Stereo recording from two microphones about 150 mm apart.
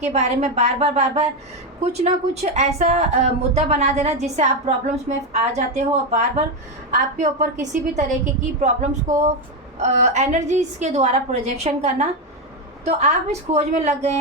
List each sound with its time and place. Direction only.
0.0 s a woman's voice: 45° right (ahead or behind)